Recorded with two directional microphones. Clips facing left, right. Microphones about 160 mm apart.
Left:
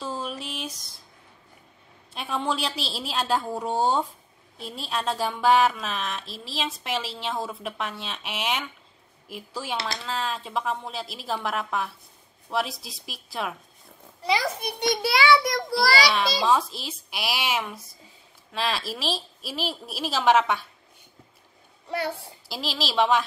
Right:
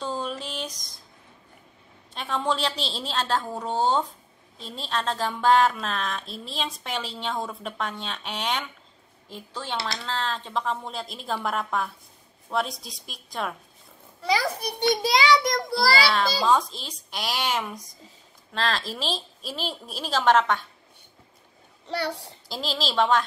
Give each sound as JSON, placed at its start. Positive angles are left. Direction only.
{"t": 0.0, "sound": "a sound", "side_deg": 5}
{"t": 2.1, "sound": "a woman's voice", "side_deg": 10}
{"t": 15.0, "sound": "a child's voice", "side_deg": -20}
{"t": 16.1, "sound": "a woman's voice", "side_deg": 5}
{"t": 22.5, "sound": "a woman's voice", "side_deg": 10}